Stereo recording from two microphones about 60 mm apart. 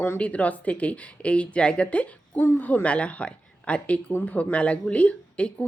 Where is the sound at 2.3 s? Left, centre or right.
Left.